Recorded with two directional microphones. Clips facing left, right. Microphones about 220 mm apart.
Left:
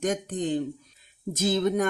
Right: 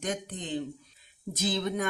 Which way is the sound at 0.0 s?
45° left (ahead or behind).